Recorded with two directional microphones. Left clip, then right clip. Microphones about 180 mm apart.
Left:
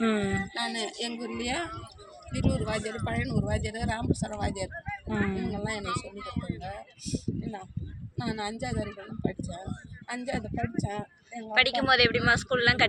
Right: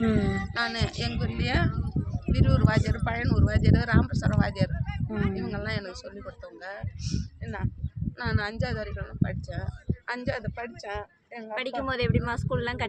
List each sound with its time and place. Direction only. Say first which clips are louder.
0.0 s speech: even; 5° right (ahead or behind)
11.5 s speech: left 7 dB; 55° right (ahead or behind)